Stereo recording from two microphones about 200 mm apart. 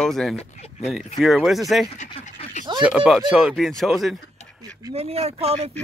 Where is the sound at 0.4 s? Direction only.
30° left (ahead or behind).